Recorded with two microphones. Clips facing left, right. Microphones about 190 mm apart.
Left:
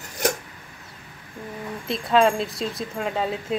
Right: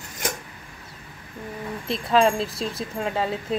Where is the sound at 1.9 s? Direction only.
Centre (ahead or behind).